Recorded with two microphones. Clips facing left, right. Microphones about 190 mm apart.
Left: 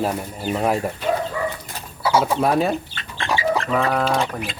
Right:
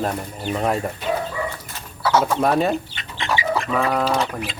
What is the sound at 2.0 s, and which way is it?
Speech, 10° left (ahead or behind).